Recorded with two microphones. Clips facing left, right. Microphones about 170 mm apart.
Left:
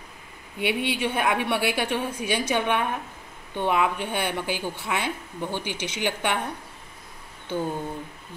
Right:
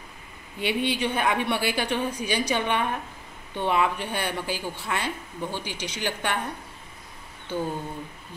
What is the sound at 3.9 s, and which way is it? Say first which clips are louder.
Speech: left 2 dB; 60° left (ahead or behind).